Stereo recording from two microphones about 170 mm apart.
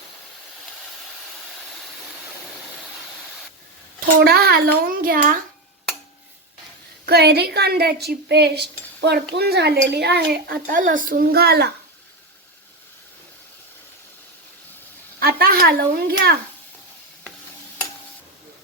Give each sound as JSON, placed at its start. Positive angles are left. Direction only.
{"t": 4.2, "sound": "a child's voice", "side_deg": -65}
{"t": 7.0, "sound": "speech", "side_deg": -70}
{"t": 15.2, "sound": "speech", "side_deg": -65}